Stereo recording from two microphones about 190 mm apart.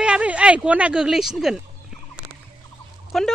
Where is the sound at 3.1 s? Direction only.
Centre (ahead or behind).